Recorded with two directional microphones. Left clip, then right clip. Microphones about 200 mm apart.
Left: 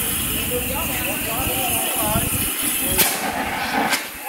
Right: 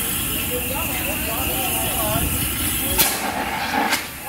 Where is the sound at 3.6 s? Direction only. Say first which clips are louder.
Even; 15° left (ahead or behind).